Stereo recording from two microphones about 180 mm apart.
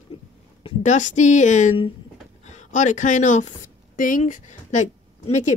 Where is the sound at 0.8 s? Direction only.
40° left (ahead or behind).